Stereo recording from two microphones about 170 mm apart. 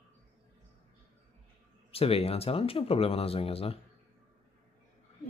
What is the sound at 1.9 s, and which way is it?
Speech, 35° left (ahead or behind).